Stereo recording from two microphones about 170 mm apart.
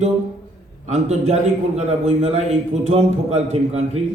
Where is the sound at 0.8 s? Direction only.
40° right (ahead or behind).